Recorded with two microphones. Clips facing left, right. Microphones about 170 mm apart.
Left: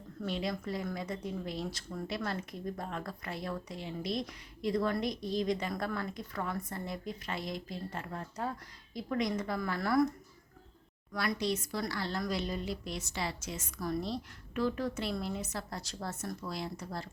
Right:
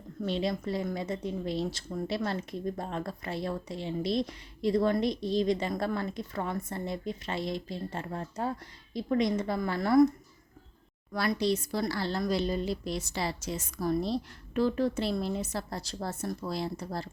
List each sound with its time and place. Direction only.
0.3 s a woman's voice: 25° right (ahead or behind)
11.1 s speech: 30° right (ahead or behind)